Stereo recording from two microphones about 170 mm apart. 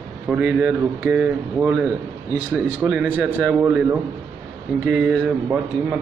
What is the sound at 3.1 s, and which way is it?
Speech, centre (ahead or behind).